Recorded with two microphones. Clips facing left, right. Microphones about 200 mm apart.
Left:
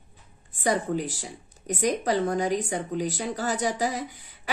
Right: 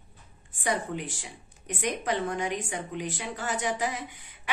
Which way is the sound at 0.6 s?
35° left (ahead or behind).